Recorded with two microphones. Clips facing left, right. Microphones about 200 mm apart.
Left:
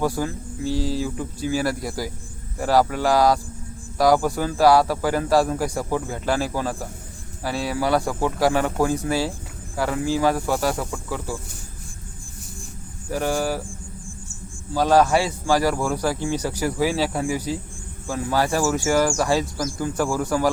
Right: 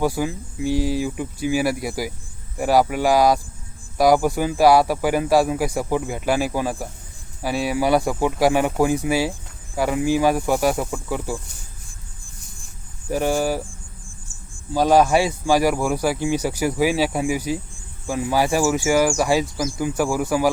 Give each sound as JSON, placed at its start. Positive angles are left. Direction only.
{"t": 0.0, "sound": "a man's voice", "side_deg": -10}
{"t": 13.1, "sound": "a man's voice", "side_deg": -15}
{"t": 14.7, "sound": "a man's voice", "side_deg": -15}